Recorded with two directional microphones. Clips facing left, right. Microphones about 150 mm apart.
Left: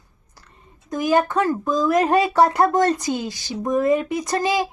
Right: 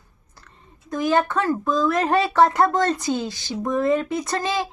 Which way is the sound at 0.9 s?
15° left (ahead or behind).